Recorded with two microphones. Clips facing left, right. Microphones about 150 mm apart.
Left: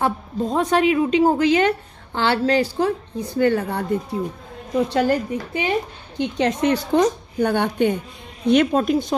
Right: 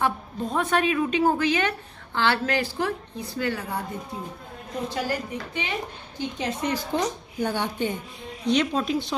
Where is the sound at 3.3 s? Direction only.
50° left (ahead or behind); by 5.1 s 70° left (ahead or behind).